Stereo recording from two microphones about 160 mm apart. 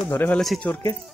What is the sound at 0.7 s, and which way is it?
Speech, 20° left (ahead or behind).